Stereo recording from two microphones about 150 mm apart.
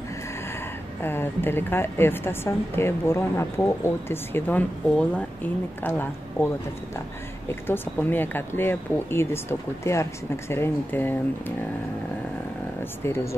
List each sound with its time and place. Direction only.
1.0 s a woman's voice: 15° left (ahead or behind)
13.0 s a woman's voice: 15° left (ahead or behind)